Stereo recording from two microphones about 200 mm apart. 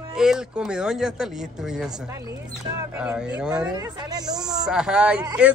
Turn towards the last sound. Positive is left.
turn(degrees=-5)  # may be behind; listen again after turning